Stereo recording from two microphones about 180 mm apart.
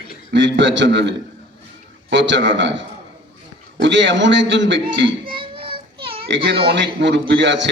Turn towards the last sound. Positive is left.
turn(degrees=-85)